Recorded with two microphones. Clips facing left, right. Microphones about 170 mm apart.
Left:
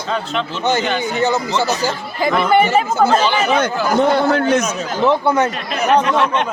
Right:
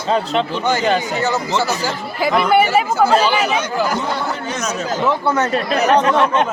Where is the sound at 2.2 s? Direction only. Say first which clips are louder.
Even; 5° right (ahead or behind).